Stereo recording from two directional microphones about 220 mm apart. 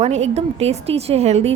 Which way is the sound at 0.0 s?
30° right (ahead or behind).